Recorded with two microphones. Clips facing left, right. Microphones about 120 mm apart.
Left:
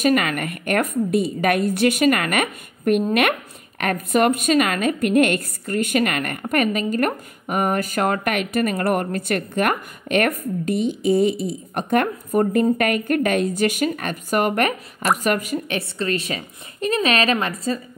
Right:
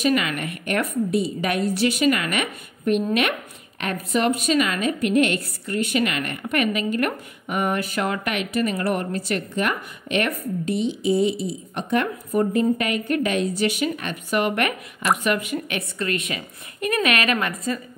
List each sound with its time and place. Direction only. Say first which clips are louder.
0.0 s a woman's voice: left 3 dB; 50° left (ahead or behind); by 17.7 s 30° left (ahead or behind)